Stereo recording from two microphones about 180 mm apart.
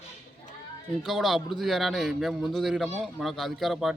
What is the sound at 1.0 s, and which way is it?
A man's voice, centre (ahead or behind).